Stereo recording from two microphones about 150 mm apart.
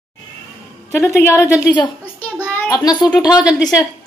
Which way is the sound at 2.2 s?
10° left (ahead or behind).